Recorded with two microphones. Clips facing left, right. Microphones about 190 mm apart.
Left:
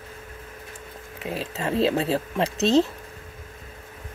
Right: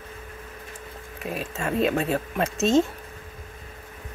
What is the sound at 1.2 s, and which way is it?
Speech, 25° left (ahead or behind).